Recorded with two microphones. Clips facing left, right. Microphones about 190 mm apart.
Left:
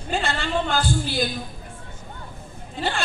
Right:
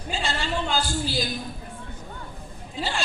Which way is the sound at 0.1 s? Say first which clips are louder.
Left 4 dB; 55° left (ahead or behind).